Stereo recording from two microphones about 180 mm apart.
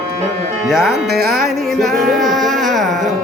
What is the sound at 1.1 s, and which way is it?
Music, 60° right (ahead or behind).